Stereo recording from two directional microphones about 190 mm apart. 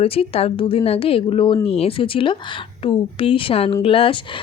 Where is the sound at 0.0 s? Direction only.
30° left (ahead or behind).